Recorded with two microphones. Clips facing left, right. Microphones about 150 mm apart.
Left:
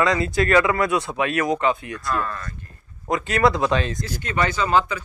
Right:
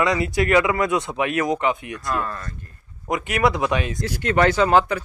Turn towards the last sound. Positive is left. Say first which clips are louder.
# right 3 dB
turn(degrees=-65)  # may be behind; listen again after turning